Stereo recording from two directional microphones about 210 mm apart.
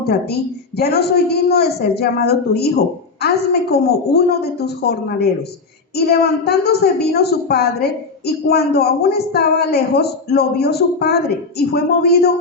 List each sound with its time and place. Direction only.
0.0 s speech: 50° left (ahead or behind)
3.7 s speech: 50° left (ahead or behind)